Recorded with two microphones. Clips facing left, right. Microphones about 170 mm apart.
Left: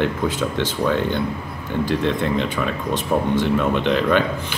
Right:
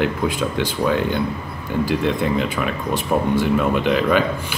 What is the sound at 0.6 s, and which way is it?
Speech, 10° right (ahead or behind).